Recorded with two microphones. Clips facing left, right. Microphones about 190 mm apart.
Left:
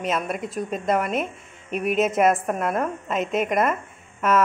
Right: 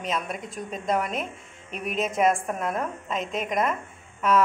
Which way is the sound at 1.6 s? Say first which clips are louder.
Left 8 dB; 60° left (ahead or behind).